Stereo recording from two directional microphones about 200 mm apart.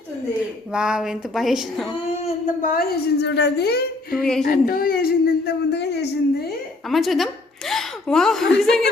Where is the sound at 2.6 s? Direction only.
45° left (ahead or behind).